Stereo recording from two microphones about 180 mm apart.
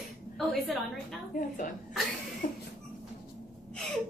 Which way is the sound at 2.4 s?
45° left (ahead or behind).